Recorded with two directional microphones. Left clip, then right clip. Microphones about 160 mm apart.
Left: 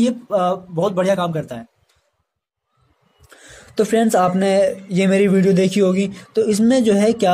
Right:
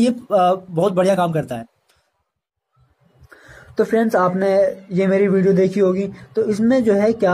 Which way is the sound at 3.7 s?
45° left (ahead or behind).